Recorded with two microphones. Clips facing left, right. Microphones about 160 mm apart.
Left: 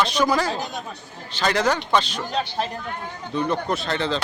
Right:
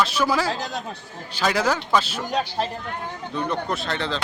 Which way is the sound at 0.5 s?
90° right.